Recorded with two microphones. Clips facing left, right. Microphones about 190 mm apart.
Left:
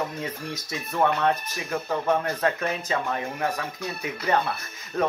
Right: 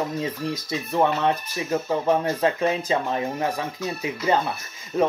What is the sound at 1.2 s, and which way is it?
Speech, 20° right (ahead or behind).